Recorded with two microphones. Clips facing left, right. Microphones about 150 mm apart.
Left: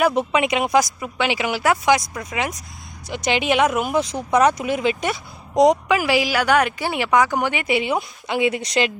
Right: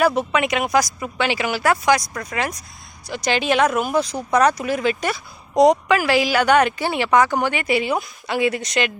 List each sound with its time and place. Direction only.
0.1 s speech: 25° left (ahead or behind)
0.9 s a woman's voice: 10° left (ahead or behind); by 8.9 s 30° left (ahead or behind)